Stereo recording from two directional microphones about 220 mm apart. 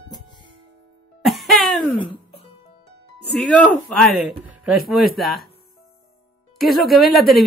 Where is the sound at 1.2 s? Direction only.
Centre (ahead or behind).